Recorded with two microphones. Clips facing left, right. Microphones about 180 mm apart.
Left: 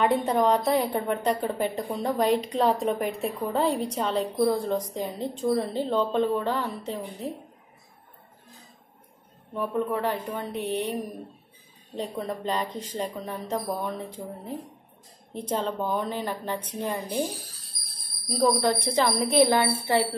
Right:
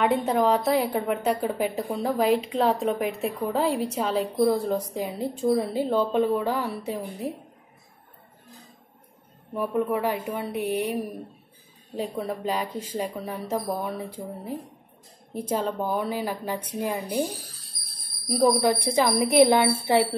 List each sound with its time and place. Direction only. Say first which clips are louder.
0.0 s a woman's voice: even; centre (ahead or behind)
9.5 s speech: right 2 dB; 15° right (ahead or behind)
18.3 s speech: right 2 dB; 15° right (ahead or behind)